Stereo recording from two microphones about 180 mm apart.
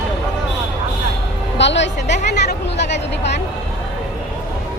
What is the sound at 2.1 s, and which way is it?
Speech, 40° left (ahead or behind).